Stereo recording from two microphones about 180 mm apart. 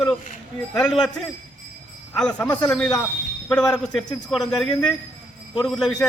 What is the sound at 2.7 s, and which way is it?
A man's voice, 5° left (ahead or behind).